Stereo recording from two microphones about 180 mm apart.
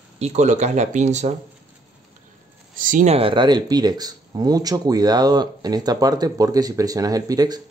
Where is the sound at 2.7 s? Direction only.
50° right (ahead or behind).